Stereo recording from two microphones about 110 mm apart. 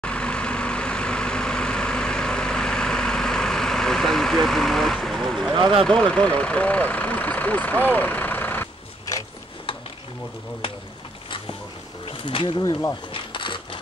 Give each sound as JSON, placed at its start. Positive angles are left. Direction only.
{"t": 0.0, "sound": "vehicle", "side_deg": 10}
{"t": 5.9, "sound": "speech", "side_deg": 10}
{"t": 10.6, "sound": "bee", "side_deg": 55}
{"t": 12.1, "sound": "a sound", "side_deg": 55}
{"t": 12.5, "sound": "speech", "side_deg": 35}
{"t": 13.1, "sound": "a sound", "side_deg": 50}